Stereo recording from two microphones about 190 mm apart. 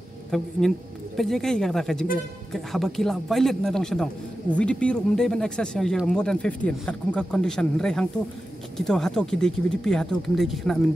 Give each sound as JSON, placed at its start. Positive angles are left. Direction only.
{"t": 0.3, "sound": "speech", "side_deg": 0}